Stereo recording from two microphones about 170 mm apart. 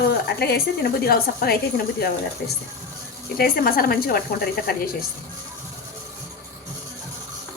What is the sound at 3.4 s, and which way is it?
Speech, 60° left (ahead or behind).